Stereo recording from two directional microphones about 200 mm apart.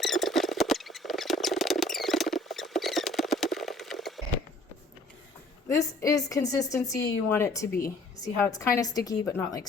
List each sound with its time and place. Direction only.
0.0 s rodents: centre (ahead or behind)
5.6 s a woman's voice: 15° left (ahead or behind)